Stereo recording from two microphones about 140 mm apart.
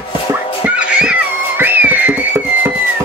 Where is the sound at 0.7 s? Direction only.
10° right (ahead or behind).